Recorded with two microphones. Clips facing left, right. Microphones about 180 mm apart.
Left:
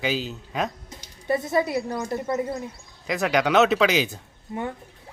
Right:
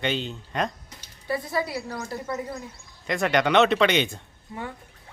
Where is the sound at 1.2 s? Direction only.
25° left (ahead or behind).